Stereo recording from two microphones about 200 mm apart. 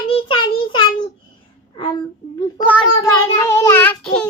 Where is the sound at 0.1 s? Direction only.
25° left (ahead or behind).